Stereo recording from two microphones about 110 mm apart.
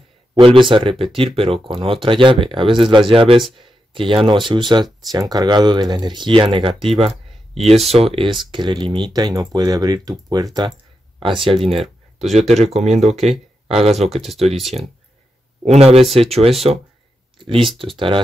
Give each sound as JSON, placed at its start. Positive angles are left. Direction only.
{"t": 0.4, "sound": "speech", "side_deg": -50}
{"t": 8.5, "sound": "speech", "side_deg": -45}
{"t": 11.1, "sound": "speech", "side_deg": -50}
{"t": 12.4, "sound": "speech", "side_deg": -90}
{"t": 13.1, "sound": "speech", "side_deg": 0}
{"t": 13.7, "sound": "speech", "side_deg": -65}
{"t": 14.2, "sound": "speech", "side_deg": 0}
{"t": 15.6, "sound": "speech", "side_deg": -70}
{"t": 17.4, "sound": "speech", "side_deg": -55}